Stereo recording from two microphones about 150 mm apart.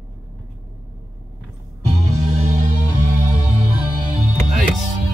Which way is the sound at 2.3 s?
50° right (ahead or behind).